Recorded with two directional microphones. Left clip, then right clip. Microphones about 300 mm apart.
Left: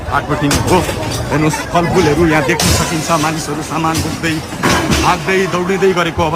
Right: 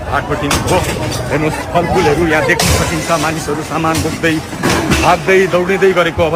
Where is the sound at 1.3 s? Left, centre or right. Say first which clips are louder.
Left 1 dB; centre.